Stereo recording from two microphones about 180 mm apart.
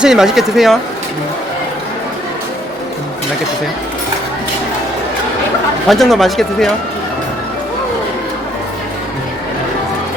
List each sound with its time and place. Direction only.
0.0 s speech: centre (ahead or behind)
5.9 s speech: centre (ahead or behind)